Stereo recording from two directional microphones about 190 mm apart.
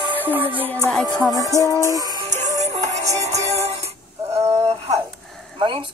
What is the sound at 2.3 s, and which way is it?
Music, 40° right (ahead or behind).